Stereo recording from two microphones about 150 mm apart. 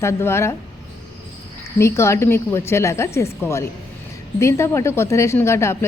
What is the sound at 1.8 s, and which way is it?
A woman's voice, 20° left (ahead or behind).